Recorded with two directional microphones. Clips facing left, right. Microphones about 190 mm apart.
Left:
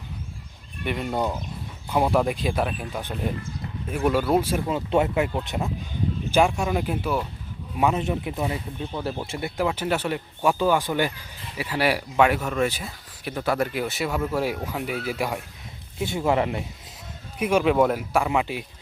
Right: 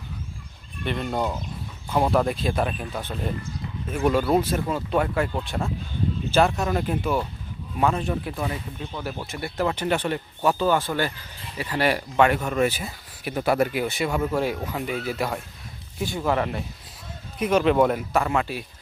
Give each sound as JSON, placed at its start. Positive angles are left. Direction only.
{"t": 0.9, "sound": "speech", "side_deg": 10}
{"t": 4.9, "sound": "speech", "side_deg": 25}
{"t": 7.8, "sound": "speech", "side_deg": 20}
{"t": 9.6, "sound": "speech", "side_deg": 5}
{"t": 16.0, "sound": "speech", "side_deg": 25}
{"t": 17.3, "sound": "speech", "side_deg": 10}